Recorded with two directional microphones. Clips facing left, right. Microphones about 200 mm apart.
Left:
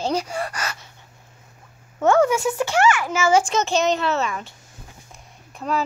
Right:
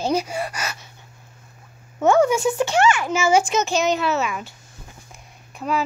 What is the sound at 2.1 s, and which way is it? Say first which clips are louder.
A child's voice: right 1 dB; 15° right (ahead or behind).